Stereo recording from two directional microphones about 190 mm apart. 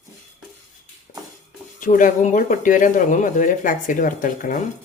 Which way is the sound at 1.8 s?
45° left (ahead or behind).